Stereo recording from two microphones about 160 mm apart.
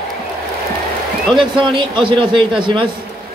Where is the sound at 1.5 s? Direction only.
30° right (ahead or behind).